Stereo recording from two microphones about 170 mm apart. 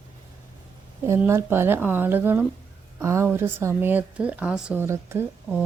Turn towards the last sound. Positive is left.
turn(degrees=-10)  # may be behind; listen again after turning